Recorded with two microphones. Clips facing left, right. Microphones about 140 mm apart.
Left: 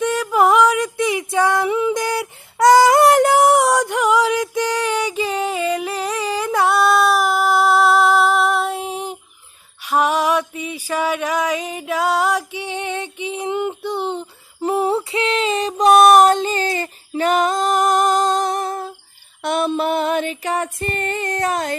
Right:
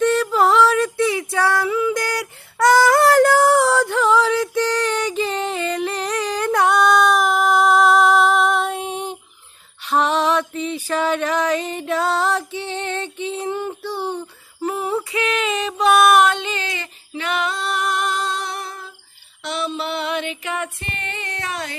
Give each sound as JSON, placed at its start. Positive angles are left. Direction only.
{"t": 0.0, "sound": "music", "side_deg": 10}